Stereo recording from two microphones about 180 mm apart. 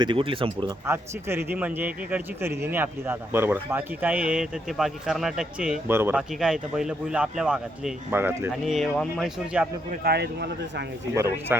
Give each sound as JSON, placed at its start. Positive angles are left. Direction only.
{"t": 0.0, "sound": "speech", "side_deg": -30}
{"t": 0.9, "sound": "a man's voice", "side_deg": -15}
{"t": 8.6, "sound": "speech", "side_deg": 0}
{"t": 9.9, "sound": "speech", "side_deg": -60}
{"t": 11.1, "sound": "a man's voice", "side_deg": -15}